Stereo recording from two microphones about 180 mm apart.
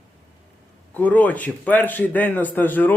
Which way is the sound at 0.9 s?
10° left (ahead or behind).